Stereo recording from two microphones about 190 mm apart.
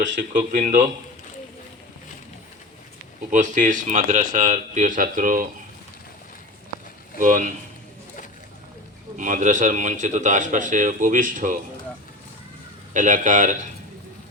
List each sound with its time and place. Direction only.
0.5 s a man's voice: 45° right (ahead or behind)
3.3 s a man's voice: 40° right (ahead or behind)
7.2 s a man's voice: 45° right (ahead or behind)
9.1 s a man's voice: 45° right (ahead or behind)
12.9 s a man's voice: 40° right (ahead or behind)